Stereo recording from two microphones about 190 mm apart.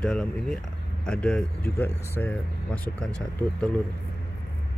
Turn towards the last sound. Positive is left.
turn(degrees=5)  # may be behind; listen again after turning